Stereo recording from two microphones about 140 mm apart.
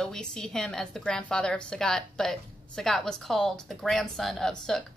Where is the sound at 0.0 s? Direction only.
5° left (ahead or behind).